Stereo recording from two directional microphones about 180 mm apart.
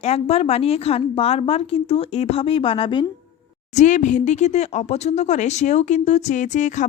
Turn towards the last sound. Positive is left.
turn(degrees=45)  # may be behind; listen again after turning